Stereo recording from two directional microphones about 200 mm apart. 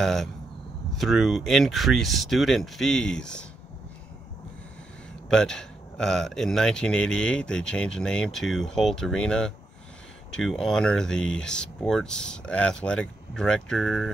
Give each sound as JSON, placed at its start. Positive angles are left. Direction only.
{"t": 0.0, "sound": "speech", "side_deg": 0}
{"t": 5.3, "sound": "speech", "side_deg": 5}